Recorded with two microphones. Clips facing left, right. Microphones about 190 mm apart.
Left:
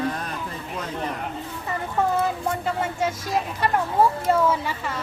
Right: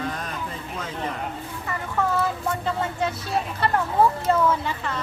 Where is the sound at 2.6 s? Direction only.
10° left (ahead or behind).